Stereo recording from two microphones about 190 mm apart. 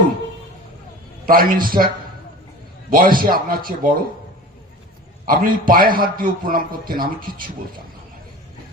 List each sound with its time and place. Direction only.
1.3 s a man's voice: 50° right (ahead or behind)
2.9 s a man's voice: 50° right (ahead or behind)
5.2 s a man's voice: 50° right (ahead or behind)